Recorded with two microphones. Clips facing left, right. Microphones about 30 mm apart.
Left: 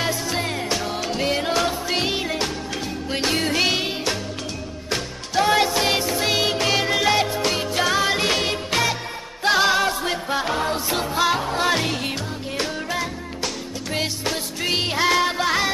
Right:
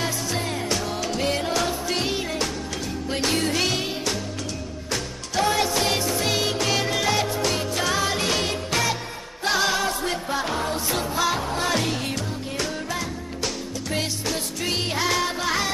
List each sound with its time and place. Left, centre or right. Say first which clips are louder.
0.7 s music: left 1 dB; centre
5.5 s music: left 4 dB; left
14.3 s music: left 3 dB; left